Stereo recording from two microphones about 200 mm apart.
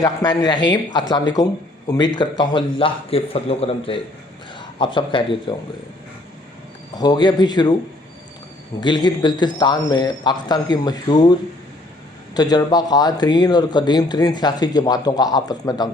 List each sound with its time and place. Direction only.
0.0 s speech: 20° left (ahead or behind)
4.9 s speech: 25° left (ahead or behind)
6.9 s speech: 20° left (ahead or behind)
8.8 s speech: 20° left (ahead or behind)
12.3 s speech: 20° left (ahead or behind)